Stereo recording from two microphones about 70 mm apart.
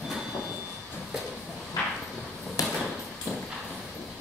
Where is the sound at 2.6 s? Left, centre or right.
Left.